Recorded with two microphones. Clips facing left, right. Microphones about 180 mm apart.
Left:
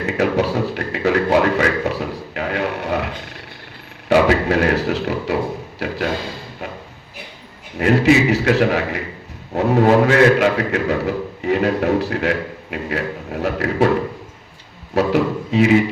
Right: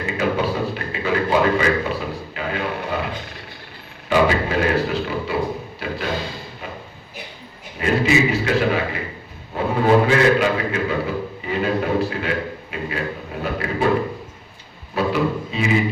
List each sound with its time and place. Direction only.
0.0 s a man's voice: 75° left (ahead or behind)
4.1 s a man's voice: 75° left (ahead or behind)
7.8 s a man's voice: 75° left (ahead or behind)
14.9 s a man's voice: 75° left (ahead or behind)